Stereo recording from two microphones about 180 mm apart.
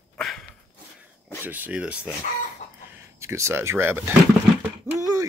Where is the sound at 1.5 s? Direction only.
10° right (ahead or behind).